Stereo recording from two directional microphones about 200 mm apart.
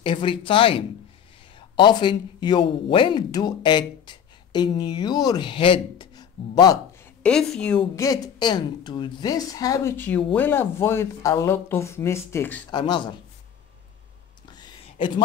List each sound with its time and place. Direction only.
0.0 s speech: 25° left (ahead or behind)
7.2 s a woman's voice: 5° left (ahead or behind)
7.9 s a woman's voice: 15° left (ahead or behind)
12.7 s speech: 25° left (ahead or behind)
14.5 s a sound: 20° left (ahead or behind)